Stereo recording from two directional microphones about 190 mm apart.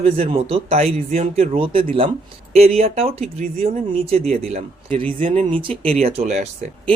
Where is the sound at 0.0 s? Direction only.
30° right (ahead or behind).